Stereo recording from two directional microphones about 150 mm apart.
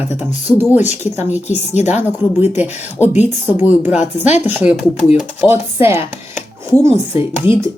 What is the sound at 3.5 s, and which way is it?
Speech, 15° right (ahead or behind).